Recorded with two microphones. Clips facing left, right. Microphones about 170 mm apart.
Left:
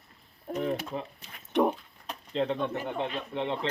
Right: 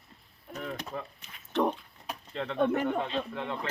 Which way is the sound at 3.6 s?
25° left (ahead or behind).